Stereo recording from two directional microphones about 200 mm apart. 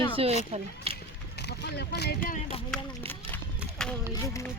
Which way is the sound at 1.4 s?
55° left (ahead or behind).